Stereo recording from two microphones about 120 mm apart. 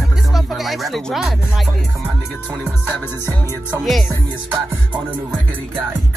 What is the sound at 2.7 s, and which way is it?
Music, 20° left (ahead or behind).